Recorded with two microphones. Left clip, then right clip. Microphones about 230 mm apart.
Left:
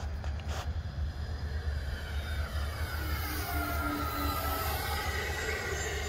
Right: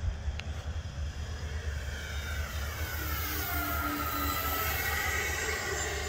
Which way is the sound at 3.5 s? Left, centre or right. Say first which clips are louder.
Even; centre.